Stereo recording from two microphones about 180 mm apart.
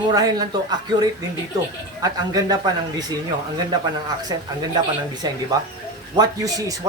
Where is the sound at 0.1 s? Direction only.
20° right (ahead or behind).